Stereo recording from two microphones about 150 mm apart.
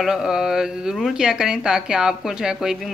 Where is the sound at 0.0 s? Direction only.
5° right (ahead or behind).